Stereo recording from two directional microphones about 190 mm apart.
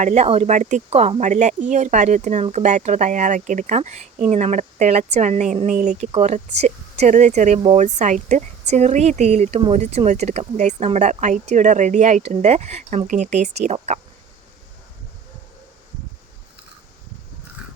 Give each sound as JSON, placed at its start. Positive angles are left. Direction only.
{"t": 0.0, "sound": "speech", "side_deg": -35}